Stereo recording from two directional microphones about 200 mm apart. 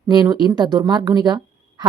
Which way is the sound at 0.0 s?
20° right (ahead or behind).